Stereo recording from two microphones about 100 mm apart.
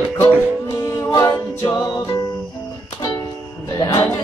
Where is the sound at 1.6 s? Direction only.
40° left (ahead or behind).